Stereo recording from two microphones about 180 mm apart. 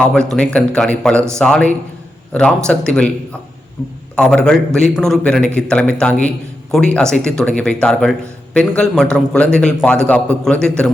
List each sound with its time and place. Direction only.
0.0 s a man's voice: 5° left (ahead or behind)